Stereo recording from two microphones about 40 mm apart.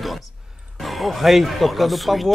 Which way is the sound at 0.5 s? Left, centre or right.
Centre.